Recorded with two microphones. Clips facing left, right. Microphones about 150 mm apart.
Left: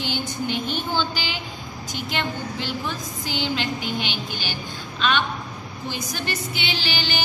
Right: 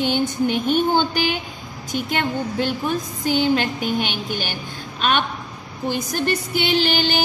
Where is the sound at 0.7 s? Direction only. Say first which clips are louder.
Right 7 dB; 55° right (ahead or behind).